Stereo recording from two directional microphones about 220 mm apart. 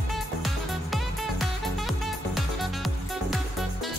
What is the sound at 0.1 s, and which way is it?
Music, centre (ahead or behind).